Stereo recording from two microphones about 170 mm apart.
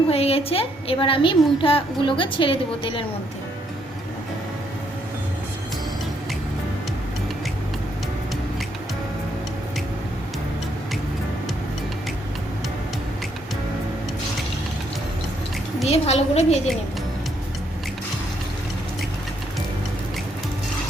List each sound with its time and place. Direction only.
0.1 s a woman's voice: 35° left (ahead or behind)
15.9 s a woman's voice: 40° left (ahead or behind)